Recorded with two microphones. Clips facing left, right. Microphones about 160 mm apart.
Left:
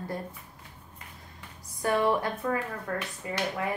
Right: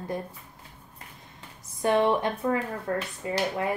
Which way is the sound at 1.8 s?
25° right (ahead or behind).